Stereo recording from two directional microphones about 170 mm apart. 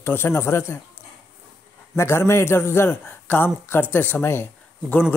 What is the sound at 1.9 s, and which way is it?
Speech, 15° left (ahead or behind).